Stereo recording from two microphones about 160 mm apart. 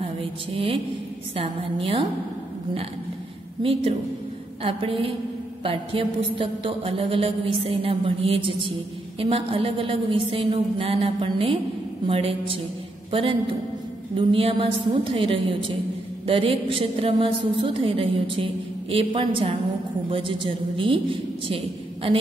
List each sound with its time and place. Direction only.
0.0 s a sound: 35° right (ahead or behind)
1.3 s a woman's voice: 35° right (ahead or behind)
4.6 s a woman's voice: 35° right (ahead or behind)